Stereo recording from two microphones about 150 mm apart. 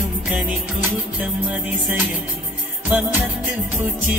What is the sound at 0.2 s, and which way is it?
Music, 10° right (ahead or behind).